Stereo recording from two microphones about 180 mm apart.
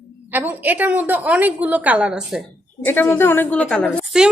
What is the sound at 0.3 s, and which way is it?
A woman's voice, 10° right (ahead or behind).